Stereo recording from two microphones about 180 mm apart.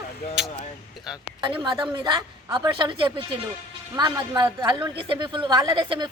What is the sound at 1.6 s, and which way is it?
A woman's voice, 25° right (ahead or behind).